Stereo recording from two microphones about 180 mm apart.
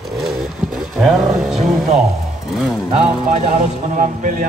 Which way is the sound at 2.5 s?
Centre (ahead or behind).